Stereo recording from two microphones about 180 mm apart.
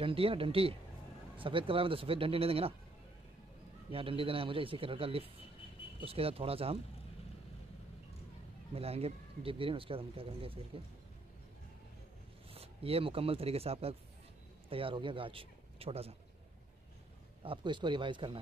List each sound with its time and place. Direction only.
0.0 s speech: 30° right (ahead or behind)
3.9 s speech: 30° right (ahead or behind)
8.7 s speech: 35° right (ahead or behind)
12.4 s speech: 30° right (ahead or behind)
17.4 s speech: 30° right (ahead or behind)